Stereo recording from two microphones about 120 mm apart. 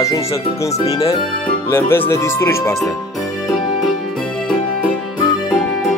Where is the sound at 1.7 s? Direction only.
20° left (ahead or behind).